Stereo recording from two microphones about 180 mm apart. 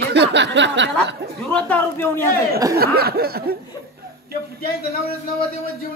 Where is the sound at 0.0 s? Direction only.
70° right (ahead or behind).